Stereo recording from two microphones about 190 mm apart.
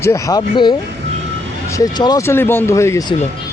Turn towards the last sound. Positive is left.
turn(degrees=15)  # may be behind; listen again after turning